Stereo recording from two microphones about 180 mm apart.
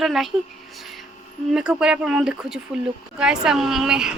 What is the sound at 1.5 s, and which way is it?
A woman's voice, 5° right (ahead or behind).